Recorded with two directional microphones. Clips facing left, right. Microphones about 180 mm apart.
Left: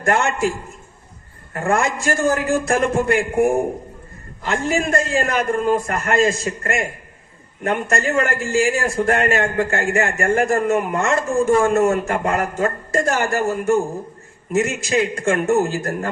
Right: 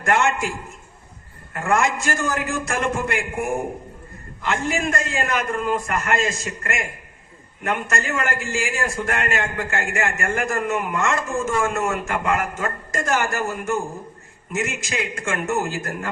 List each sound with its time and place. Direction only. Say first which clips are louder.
0.0 s a man's voice: left 2 dB; 35° left (ahead or behind)
1.5 s a man's voice: left 1 dB; 35° left (ahead or behind)